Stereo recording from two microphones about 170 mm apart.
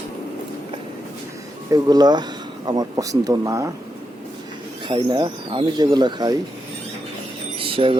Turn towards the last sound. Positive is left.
turn(degrees=-30)  # may be behind; listen again after turning